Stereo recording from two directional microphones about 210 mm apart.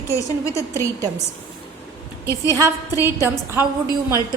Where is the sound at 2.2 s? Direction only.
15° left (ahead or behind).